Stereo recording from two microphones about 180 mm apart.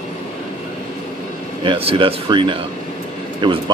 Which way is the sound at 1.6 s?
30° right (ahead or behind).